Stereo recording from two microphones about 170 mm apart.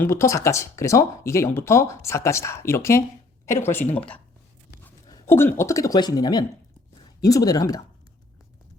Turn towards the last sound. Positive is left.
turn(degrees=20)  # may be behind; listen again after turning